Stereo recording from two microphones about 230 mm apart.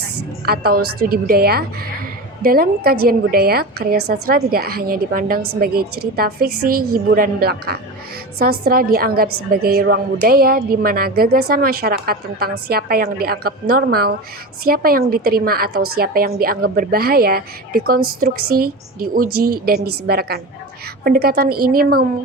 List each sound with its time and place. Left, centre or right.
0.4 s a woman's voice: right
15.7 s a woman's voice: right
16.0 s a woman's voice: right